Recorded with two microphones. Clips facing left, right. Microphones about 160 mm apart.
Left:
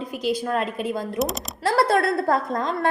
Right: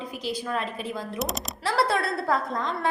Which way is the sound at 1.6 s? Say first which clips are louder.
Left 5 dB; 45° left (ahead or behind).